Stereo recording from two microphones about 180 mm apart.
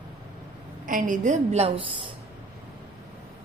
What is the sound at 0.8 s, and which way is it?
A woman's voice, 45° right (ahead or behind).